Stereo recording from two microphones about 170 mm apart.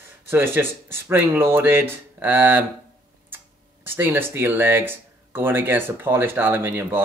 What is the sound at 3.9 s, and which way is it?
Speech, 10° right (ahead or behind).